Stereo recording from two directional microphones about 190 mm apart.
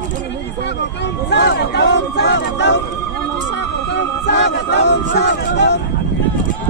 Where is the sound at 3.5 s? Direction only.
65° left (ahead or behind).